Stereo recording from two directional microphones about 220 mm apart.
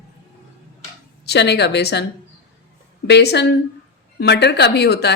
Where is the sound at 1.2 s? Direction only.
50° left (ahead or behind).